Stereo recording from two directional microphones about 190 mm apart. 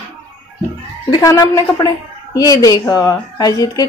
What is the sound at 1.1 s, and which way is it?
A woman's voice, 20° left (ahead or behind).